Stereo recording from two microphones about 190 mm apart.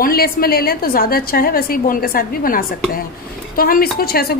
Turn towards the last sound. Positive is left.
turn(degrees=55)  # may be behind; listen again after turning